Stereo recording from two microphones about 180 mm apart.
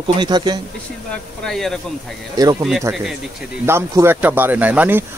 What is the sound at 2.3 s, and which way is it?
Speech, 20° right (ahead or behind).